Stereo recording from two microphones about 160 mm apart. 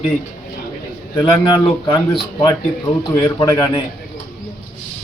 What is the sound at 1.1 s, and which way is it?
Speech, 25° left (ahead or behind).